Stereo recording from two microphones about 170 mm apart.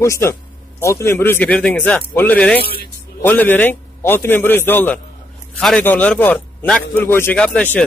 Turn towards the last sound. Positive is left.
turn(degrees=10)  # may be behind; listen again after turning